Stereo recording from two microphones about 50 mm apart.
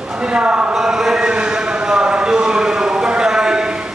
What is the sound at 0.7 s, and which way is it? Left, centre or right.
Chant, centre.